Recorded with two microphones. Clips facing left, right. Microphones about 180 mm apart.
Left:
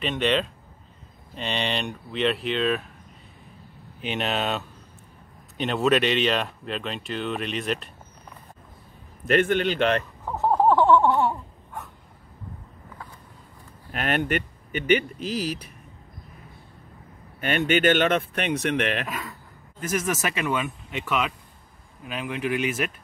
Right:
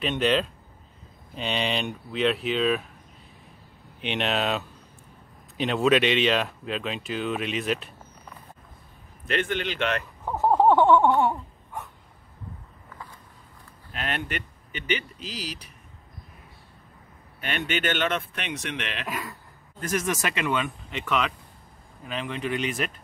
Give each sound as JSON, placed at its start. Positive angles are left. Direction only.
{"t": 0.0, "sound": "speech", "side_deg": 0}
{"t": 4.0, "sound": "speech", "side_deg": 0}
{"t": 9.3, "sound": "speech", "side_deg": 45}
{"t": 10.4, "sound": "a sound", "side_deg": -15}
{"t": 11.0, "sound": "speech", "side_deg": 0}
{"t": 13.9, "sound": "speech", "side_deg": 55}
{"t": 17.4, "sound": "speech", "side_deg": 45}
{"t": 19.0, "sound": "speech", "side_deg": 0}